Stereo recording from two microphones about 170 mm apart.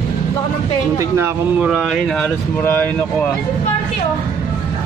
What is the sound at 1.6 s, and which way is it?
Speech, centre (ahead or behind).